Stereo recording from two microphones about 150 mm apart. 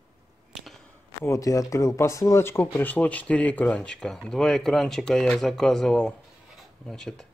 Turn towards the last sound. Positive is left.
turn(degrees=5)  # may be behind; listen again after turning